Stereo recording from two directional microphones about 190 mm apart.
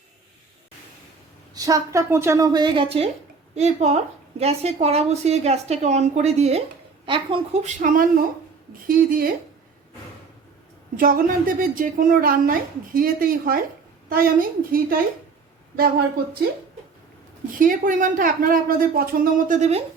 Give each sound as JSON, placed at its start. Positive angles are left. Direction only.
{"t": 1.5, "sound": "a woman's voice", "side_deg": -20}
{"t": 10.9, "sound": "a woman's voice", "side_deg": -45}
{"t": 17.6, "sound": "a woman's voice", "side_deg": -45}